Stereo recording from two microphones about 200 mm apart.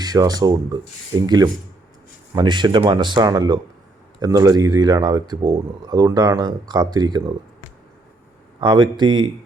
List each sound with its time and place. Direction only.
0.0 s speech: 20° right (ahead or behind)
8.6 s speech: 25° right (ahead or behind)